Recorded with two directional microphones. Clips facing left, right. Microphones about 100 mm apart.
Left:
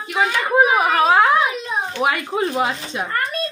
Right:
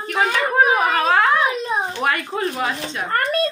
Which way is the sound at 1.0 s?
15° left (ahead or behind).